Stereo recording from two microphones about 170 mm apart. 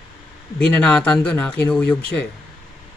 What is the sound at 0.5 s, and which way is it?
Speech, 5° left (ahead or behind).